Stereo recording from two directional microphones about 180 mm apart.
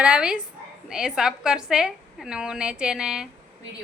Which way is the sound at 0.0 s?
5° right (ahead or behind).